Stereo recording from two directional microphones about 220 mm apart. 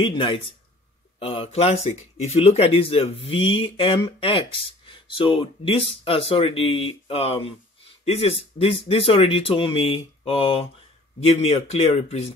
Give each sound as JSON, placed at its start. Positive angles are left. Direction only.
{"t": 0.0, "sound": "speech", "side_deg": 20}